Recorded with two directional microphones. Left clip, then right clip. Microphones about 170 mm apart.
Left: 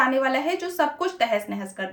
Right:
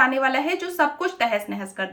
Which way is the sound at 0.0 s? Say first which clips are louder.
Right 2 dB; 20° right (ahead or behind).